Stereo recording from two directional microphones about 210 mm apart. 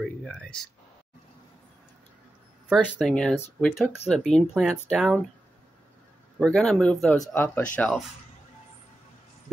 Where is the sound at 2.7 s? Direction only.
Centre (ahead or behind).